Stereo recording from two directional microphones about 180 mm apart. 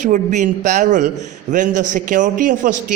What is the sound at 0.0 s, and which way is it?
A man's voice, 45° right (ahead or behind).